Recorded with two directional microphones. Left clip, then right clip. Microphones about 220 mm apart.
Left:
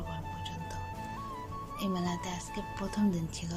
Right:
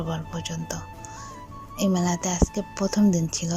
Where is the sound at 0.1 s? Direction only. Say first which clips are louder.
Right 8 dB; 35° right (ahead or behind).